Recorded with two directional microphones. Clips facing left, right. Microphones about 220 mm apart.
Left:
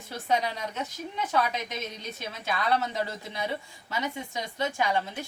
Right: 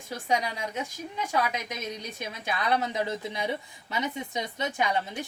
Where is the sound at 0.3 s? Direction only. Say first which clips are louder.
Left 1 dB; 10° right (ahead or behind).